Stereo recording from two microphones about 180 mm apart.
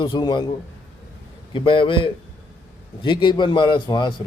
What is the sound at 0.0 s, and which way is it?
Speech, 25° left (ahead or behind).